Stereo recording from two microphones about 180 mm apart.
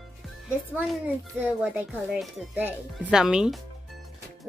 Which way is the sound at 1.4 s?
10° right (ahead or behind).